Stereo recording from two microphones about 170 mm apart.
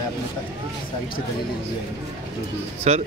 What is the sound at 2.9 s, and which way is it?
Speech, 40° right (ahead or behind).